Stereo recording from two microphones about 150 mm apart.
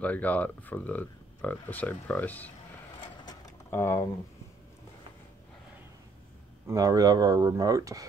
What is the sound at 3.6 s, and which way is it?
Speech, 15° left (ahead or behind).